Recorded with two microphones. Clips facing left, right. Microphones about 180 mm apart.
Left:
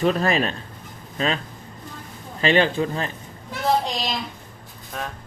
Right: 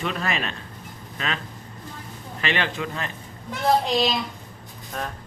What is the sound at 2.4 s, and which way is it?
Speech, 35° left (ahead or behind).